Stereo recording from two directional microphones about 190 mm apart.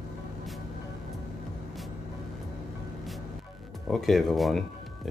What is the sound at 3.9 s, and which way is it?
Speech, centre (ahead or behind).